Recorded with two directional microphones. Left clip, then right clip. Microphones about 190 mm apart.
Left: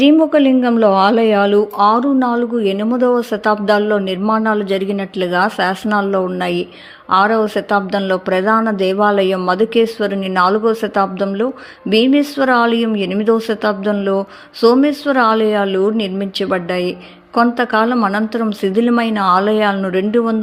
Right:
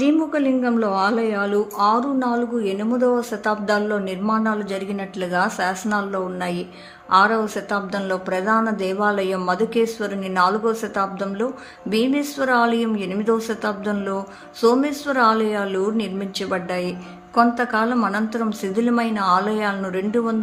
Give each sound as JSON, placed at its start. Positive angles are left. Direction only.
{"t": 0.0, "sound": "speech", "side_deg": 30}